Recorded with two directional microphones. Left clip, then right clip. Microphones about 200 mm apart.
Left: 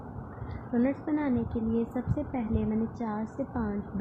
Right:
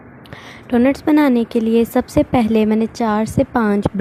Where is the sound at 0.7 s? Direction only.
55° right (ahead or behind).